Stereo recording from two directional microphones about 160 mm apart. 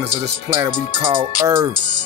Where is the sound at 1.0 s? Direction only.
25° right (ahead or behind).